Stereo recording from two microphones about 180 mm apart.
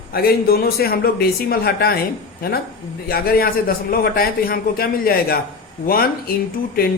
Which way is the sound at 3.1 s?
55° left (ahead or behind).